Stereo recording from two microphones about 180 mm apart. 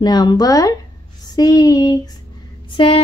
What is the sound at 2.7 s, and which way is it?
Speech, 30° left (ahead or behind).